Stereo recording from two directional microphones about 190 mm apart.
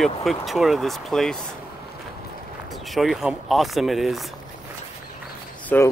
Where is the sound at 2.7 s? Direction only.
Centre (ahead or behind).